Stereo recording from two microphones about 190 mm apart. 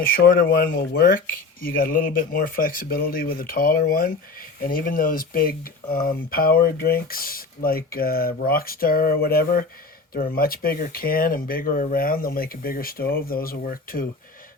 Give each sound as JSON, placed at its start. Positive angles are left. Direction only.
{"t": 0.3, "sound": "speech", "side_deg": 50}